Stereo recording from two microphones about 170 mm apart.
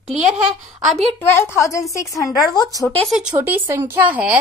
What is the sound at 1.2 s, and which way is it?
A woman's voice, 15° left (ahead or behind).